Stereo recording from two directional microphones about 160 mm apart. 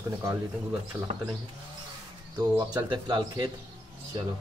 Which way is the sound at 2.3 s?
25° right (ahead or behind).